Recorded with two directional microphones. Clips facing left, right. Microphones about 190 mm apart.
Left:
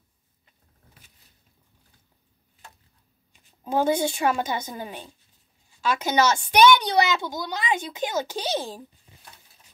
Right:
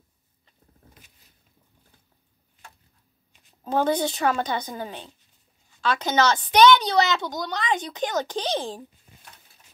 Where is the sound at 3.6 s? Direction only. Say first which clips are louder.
Even; 10° left (ahead or behind).